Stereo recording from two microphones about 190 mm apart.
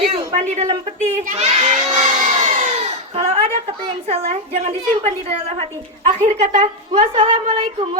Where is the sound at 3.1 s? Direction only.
30° right (ahead or behind).